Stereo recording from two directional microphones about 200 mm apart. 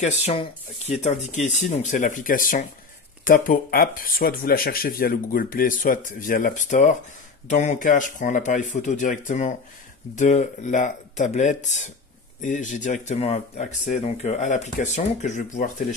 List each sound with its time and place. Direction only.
0.0 s speech: 35° left (ahead or behind)